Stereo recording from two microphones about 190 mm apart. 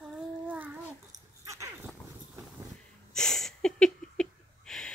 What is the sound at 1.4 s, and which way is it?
Dog, 15° right (ahead or behind).